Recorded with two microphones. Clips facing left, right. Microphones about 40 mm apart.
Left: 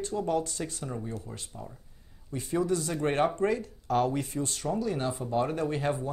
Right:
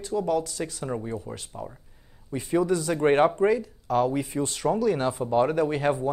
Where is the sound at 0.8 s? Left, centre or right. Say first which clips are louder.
Right 6 dB; right.